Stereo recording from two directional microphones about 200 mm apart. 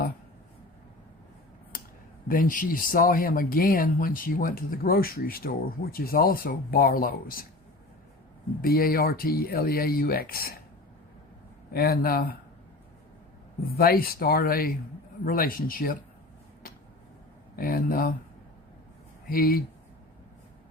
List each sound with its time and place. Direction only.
1.7 s a sound: 45° left (ahead or behind)
2.2 s speech: 45° left (ahead or behind)
8.6 s speech: 50° left (ahead or behind)
11.7 s speech: 50° left (ahead or behind)
13.7 s speech: 50° left (ahead or behind)
17.6 s speech: 45° left (ahead or behind)
19.3 s speech: 45° left (ahead or behind)